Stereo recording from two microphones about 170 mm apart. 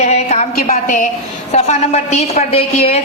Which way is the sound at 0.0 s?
40° left (ahead or behind).